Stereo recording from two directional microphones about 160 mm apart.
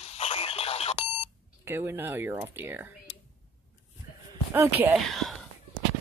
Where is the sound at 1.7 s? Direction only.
15° right (ahead or behind).